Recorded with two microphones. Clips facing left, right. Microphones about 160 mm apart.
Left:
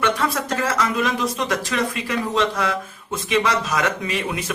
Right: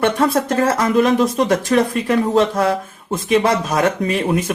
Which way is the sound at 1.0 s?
50° right (ahead or behind).